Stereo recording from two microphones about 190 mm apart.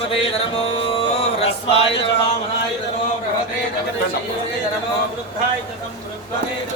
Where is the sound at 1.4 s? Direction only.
30° left (ahead or behind).